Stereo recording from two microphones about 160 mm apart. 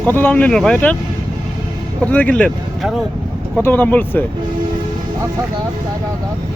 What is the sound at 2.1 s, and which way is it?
Speech, 10° left (ahead or behind).